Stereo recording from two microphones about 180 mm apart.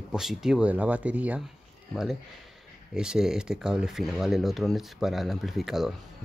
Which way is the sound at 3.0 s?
5° right (ahead or behind).